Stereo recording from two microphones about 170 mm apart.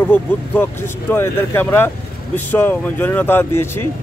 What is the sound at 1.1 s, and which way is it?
Speech, 15° left (ahead or behind).